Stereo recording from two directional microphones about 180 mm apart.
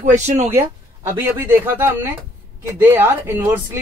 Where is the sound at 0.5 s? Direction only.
15° right (ahead or behind).